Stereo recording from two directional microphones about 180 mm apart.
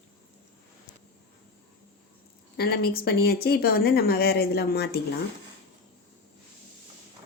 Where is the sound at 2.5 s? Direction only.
60° left (ahead or behind).